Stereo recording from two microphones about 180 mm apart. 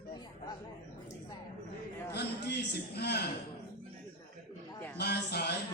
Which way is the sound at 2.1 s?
65° left (ahead or behind).